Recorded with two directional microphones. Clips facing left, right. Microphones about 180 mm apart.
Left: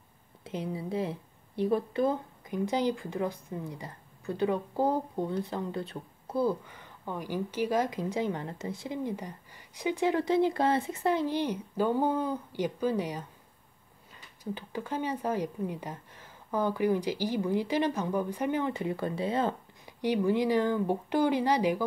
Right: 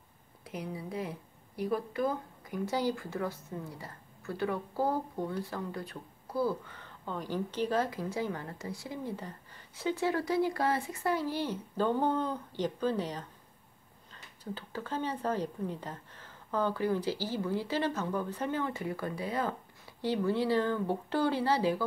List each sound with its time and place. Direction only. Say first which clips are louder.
0.4 s speech: left 4 dB; 25° left (ahead or behind)
20.0 s speech: left 3 dB; 15° left (ahead or behind)